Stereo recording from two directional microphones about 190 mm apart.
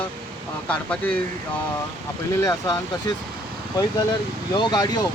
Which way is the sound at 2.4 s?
20° left (ahead or behind).